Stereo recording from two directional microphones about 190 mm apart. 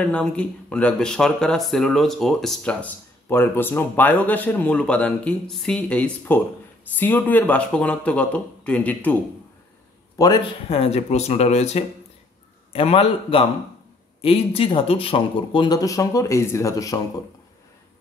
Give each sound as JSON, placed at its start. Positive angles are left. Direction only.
{"t": 0.0, "sound": "speech", "side_deg": 5}
{"t": 10.1, "sound": "a man's voice", "side_deg": 20}
{"t": 10.7, "sound": "speech", "side_deg": 30}